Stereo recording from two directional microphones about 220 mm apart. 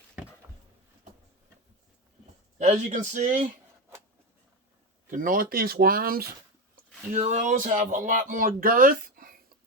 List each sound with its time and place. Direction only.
2.6 s speech: 35° right (ahead or behind)
5.1 s speech: 40° right (ahead or behind)